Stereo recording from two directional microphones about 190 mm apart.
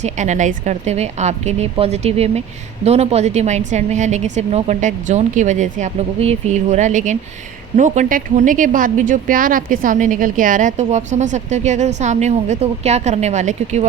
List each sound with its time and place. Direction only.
0.0 s a woman's voice: 40° right (ahead or behind)